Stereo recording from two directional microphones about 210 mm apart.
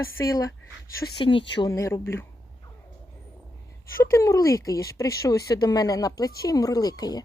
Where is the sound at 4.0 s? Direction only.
15° left (ahead or behind).